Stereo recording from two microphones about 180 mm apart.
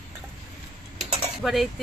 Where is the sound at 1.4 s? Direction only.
Centre (ahead or behind).